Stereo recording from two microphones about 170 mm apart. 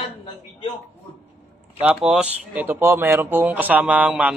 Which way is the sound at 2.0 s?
5° right (ahead or behind).